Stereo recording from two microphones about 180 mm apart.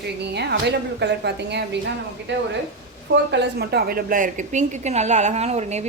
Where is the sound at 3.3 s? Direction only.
70° right (ahead or behind).